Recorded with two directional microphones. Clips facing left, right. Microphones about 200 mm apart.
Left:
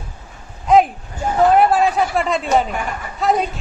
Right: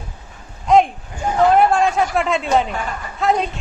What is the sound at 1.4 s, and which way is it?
A woman's voice, 5° left (ahead or behind).